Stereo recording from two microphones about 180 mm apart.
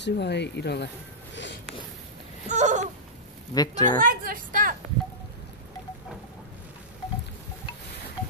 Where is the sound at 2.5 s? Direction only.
40° right (ahead or behind).